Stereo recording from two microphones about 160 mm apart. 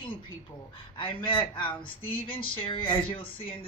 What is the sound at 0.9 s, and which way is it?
Speech, 30° left (ahead or behind).